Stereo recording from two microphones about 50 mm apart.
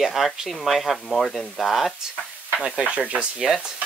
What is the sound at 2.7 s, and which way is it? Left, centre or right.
Speech, right.